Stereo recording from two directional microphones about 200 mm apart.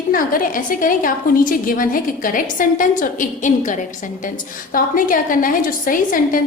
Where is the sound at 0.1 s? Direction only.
45° left (ahead or behind).